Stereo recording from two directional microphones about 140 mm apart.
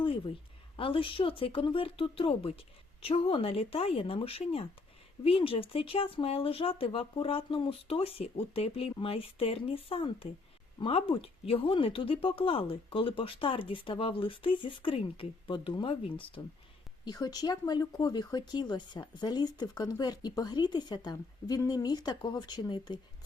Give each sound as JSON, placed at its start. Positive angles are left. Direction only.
{"t": 0.8, "sound": "speech", "side_deg": 40}
{"t": 17.1, "sound": "speech", "side_deg": 30}